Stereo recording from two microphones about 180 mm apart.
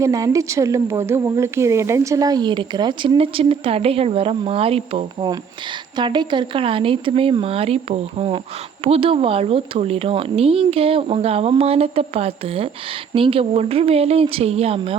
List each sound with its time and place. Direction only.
0.0 s speech: 20° right (ahead or behind); by 14.9 s 35° right (ahead or behind)